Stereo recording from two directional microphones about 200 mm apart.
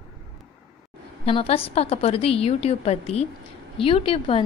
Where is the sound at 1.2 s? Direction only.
30° left (ahead or behind).